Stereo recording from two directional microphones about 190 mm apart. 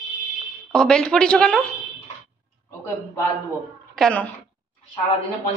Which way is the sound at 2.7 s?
15° left (ahead or behind).